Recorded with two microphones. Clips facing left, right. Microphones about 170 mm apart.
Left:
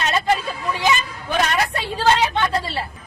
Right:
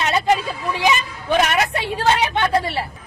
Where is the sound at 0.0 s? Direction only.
20° right (ahead or behind).